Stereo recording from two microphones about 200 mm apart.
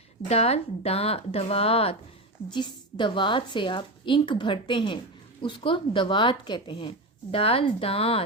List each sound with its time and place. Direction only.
0.3 s a woman's voice: 30° left (ahead or behind)